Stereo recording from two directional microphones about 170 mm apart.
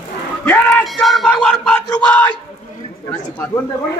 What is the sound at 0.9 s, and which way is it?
Speech, centre (ahead or behind).